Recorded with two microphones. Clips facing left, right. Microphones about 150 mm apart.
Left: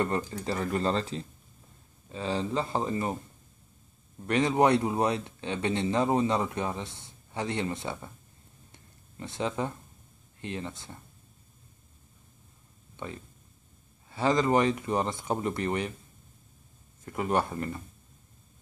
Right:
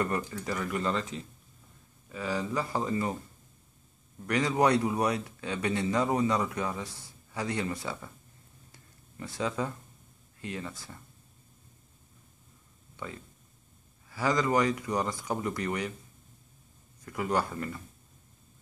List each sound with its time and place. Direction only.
0.0 s speech: 30° left (ahead or behind)
4.3 s speech: 25° left (ahead or behind)
8.7 s a sound: 25° left (ahead or behind)
10.4 s speech: 25° left (ahead or behind)
12.9 s a sound: 25° left (ahead or behind)
14.0 s speech: 25° left (ahead or behind)
17.0 s speech: 25° left (ahead or behind)